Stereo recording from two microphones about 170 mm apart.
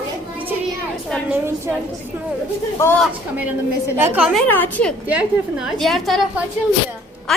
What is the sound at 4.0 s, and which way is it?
Speech, 5° right (ahead or behind).